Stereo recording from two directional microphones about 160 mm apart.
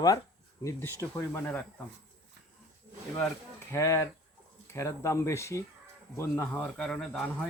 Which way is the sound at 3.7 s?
20° left (ahead or behind).